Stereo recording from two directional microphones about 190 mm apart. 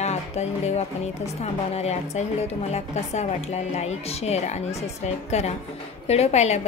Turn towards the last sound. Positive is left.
turn(degrees=35)  # may be behind; listen again after turning